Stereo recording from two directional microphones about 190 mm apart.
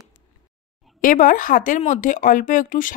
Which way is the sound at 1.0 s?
45° left (ahead or behind).